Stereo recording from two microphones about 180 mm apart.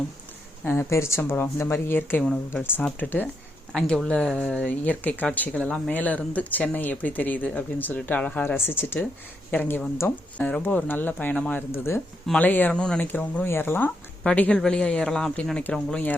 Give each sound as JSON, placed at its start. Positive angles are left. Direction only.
{"t": 0.6, "sound": "speech", "side_deg": 10}